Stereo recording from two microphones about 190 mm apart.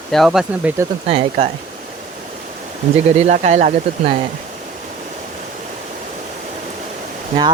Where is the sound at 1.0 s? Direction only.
30° right (ahead or behind).